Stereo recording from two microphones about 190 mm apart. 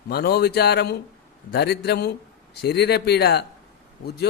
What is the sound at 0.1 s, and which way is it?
Speech, 55° left (ahead or behind).